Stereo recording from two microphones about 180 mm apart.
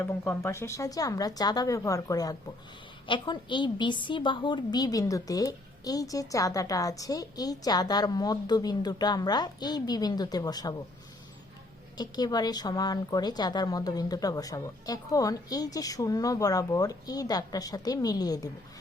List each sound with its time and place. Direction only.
0.0 s a woman's voice: 15° left (ahead or behind)
11.9 s a woman's voice: 20° left (ahead or behind)